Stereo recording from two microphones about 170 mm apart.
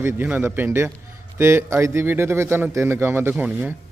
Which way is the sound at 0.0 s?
15° right (ahead or behind).